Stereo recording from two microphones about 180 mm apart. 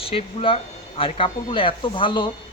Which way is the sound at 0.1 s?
30° left (ahead or behind).